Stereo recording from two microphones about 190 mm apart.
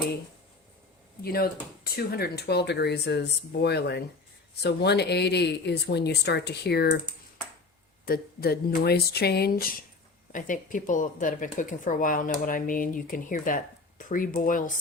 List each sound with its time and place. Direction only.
1.2 s speech: 55° left (ahead or behind)
8.0 s speech: 50° left (ahead or behind)